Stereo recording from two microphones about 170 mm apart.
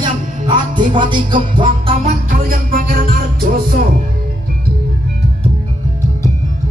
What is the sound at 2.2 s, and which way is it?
Music, 55° right (ahead or behind).